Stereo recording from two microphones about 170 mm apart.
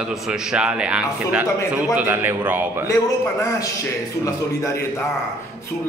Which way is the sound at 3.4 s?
20° left (ahead or behind).